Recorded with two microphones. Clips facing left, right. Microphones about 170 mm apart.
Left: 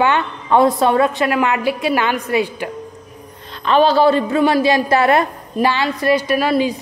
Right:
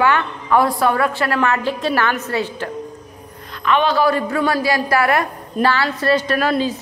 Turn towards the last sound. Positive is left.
turn(degrees=10)  # may be behind; listen again after turning